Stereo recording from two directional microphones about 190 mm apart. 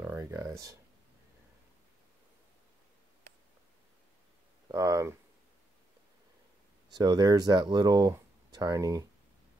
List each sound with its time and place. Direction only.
0.0 s a sound: 15° right (ahead or behind)
4.6 s speech: 20° right (ahead or behind)
6.9 s speech: 20° right (ahead or behind)